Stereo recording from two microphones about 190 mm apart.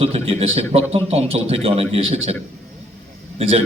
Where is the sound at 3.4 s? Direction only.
30° right (ahead or behind).